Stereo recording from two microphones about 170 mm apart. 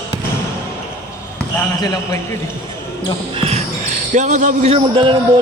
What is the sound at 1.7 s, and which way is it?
Speech, 20° left (ahead or behind).